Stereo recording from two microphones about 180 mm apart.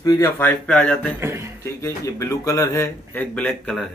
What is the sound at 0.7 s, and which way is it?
Speech, 5° left (ahead or behind).